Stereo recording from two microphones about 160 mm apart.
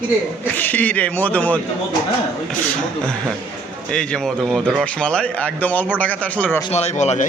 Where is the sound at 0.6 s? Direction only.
10° left (ahead or behind).